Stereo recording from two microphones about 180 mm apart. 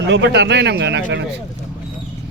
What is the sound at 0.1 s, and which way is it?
Speech, 75° right (ahead or behind).